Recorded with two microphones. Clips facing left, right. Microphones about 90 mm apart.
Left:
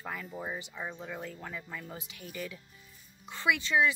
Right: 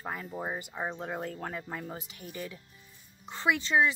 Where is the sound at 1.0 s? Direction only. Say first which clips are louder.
Right 5 dB; 45° right (ahead or behind).